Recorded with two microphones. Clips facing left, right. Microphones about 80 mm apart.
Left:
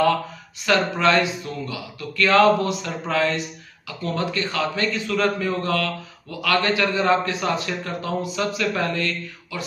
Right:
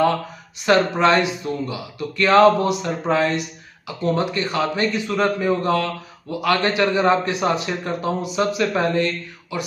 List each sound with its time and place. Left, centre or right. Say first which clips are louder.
0.6 s speech: right 4 dB; right